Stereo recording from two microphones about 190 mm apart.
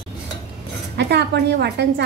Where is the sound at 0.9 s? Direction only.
60° right (ahead or behind).